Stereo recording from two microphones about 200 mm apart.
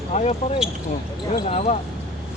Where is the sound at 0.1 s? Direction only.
35° left (ahead or behind).